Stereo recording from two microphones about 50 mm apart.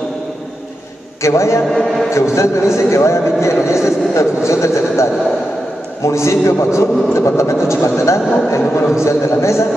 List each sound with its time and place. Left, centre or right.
1.2 s speech: left
1.7 s a man's voice: centre
2.3 s speech: left
8.5 s speech: left